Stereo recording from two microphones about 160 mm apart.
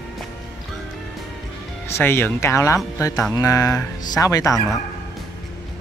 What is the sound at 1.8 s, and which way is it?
Speech, 15° left (ahead or behind).